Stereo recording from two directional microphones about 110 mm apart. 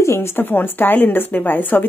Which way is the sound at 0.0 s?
25° left (ahead or behind).